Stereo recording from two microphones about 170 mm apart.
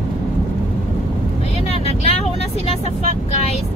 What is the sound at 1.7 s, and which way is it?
Vehicle, 35° left (ahead or behind).